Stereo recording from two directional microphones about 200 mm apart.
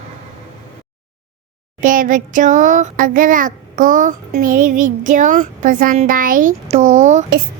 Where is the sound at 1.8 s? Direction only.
40° right (ahead or behind).